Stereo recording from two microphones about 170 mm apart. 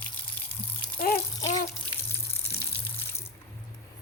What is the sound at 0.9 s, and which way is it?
Water, 60° left (ahead or behind).